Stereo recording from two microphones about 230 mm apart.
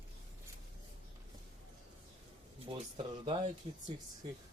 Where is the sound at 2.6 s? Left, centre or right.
Right.